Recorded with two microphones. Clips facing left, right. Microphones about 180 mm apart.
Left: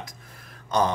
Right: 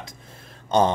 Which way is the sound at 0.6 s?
25° right (ahead or behind).